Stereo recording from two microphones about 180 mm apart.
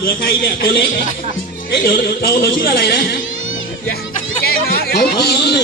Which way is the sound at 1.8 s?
55° left (ahead or behind).